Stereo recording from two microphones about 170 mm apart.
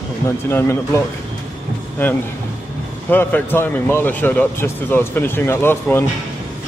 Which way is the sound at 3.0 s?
10° left (ahead or behind).